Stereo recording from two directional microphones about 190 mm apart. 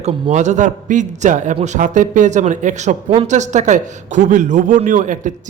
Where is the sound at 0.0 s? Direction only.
40° right (ahead or behind).